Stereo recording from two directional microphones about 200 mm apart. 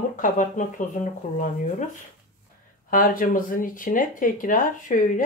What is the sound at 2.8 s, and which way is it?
Speech, 45° left (ahead or behind).